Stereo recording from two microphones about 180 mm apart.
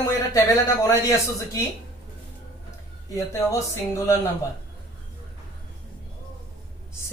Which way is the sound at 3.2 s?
15° left (ahead or behind).